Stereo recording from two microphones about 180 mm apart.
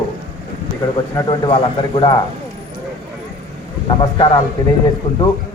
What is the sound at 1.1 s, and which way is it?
Speech, 25° left (ahead or behind).